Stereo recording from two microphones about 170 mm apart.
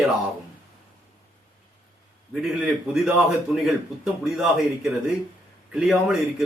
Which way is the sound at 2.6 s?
5° right (ahead or behind).